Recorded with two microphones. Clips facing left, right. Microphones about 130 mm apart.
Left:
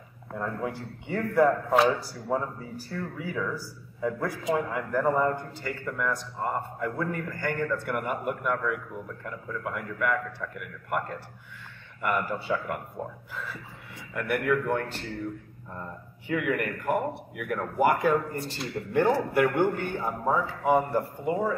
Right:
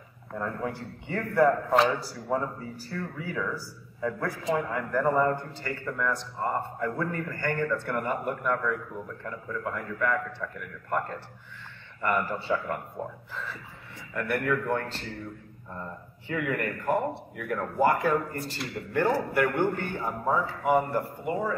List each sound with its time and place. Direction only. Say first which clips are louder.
0.3 s a man's voice: even; 10° left (ahead or behind)